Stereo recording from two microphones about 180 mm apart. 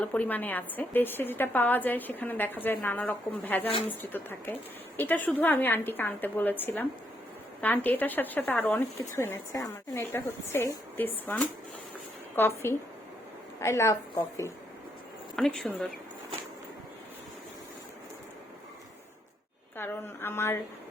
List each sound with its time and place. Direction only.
0.0 s speech: 10° left (ahead or behind)
15.4 s speech: centre (ahead or behind)
19.7 s speech: 10° left (ahead or behind)